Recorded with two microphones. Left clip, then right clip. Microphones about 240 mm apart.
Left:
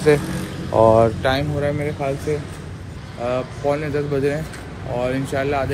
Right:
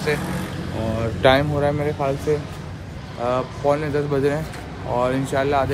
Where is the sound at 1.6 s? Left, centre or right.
Centre.